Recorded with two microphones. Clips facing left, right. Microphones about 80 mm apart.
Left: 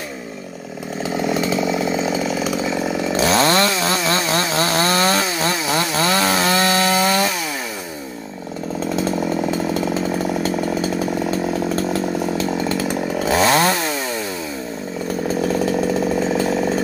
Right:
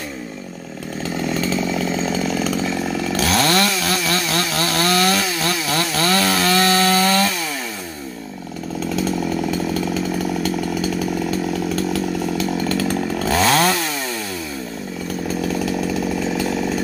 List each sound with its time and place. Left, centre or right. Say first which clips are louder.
1.1 s chainsaw: left 2 dB; centre
8.7 s chainsaw: left 1 dB; left
11.2 s chainsaw: left 1 dB; left
15.4 s chainsaw: left 4 dB; left